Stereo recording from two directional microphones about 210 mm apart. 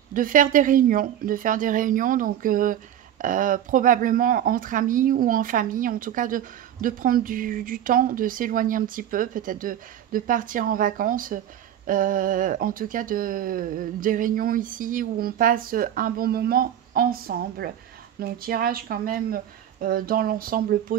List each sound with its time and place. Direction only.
0.1 s speech: 40° right (ahead or behind)